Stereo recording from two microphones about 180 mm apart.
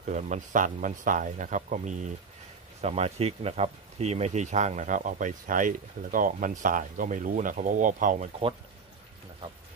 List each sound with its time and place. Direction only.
0.0 s speech: 45° right (ahead or behind)